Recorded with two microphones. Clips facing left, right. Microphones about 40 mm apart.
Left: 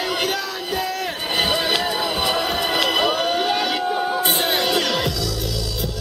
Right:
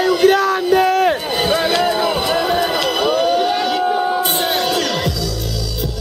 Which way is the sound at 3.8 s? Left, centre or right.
Centre.